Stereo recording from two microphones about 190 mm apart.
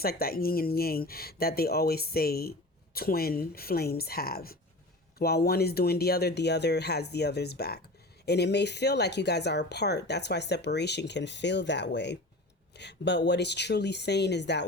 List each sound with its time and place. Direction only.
0.0 s speech: 55° left (ahead or behind)